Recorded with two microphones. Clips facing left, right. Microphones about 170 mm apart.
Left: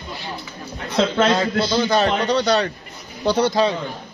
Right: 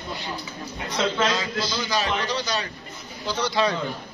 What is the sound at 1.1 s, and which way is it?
A man's voice, 55° left (ahead or behind).